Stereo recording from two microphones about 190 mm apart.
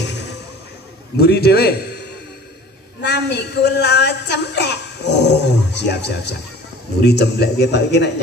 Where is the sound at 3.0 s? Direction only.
60° left (ahead or behind).